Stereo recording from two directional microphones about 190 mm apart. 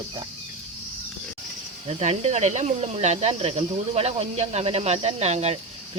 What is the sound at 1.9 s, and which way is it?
Speech, 35° right (ahead or behind).